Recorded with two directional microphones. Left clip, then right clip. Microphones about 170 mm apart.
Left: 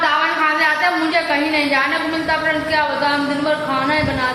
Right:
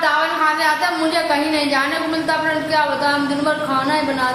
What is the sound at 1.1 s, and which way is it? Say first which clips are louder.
A woman's voice: left 1 dB; 10° right (ahead or behind).